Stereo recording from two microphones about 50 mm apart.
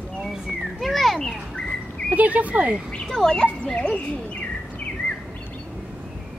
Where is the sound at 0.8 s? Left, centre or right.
Centre.